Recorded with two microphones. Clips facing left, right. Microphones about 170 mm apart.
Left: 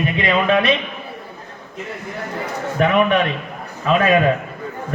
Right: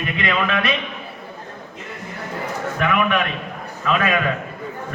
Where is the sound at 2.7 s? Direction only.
35° left (ahead or behind).